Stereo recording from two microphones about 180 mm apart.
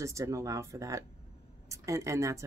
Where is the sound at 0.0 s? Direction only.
15° right (ahead or behind).